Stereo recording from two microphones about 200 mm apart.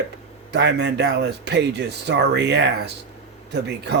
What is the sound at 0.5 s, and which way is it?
Speech, 60° right (ahead or behind).